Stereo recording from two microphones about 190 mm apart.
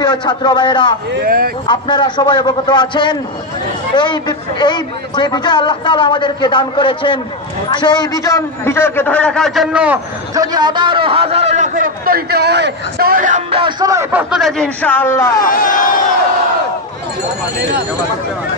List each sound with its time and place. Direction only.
0.0 s a man's voice: 25° left (ahead or behind)
1.2 s speech: 50° right (ahead or behind)
1.7 s a man's voice: 25° left (ahead or behind); by 9.9 s 5° right (ahead or behind)
10.3 s a man's voice: 20° right (ahead or behind); by 13.4 s 45° right (ahead or behind)
13.5 s speech: 25° right (ahead or behind)
14.3 s a man's voice: centre (ahead or behind)
15.4 s speech: 45° left (ahead or behind)